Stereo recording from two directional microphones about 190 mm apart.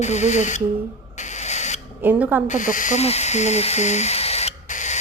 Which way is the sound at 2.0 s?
10° right (ahead or behind).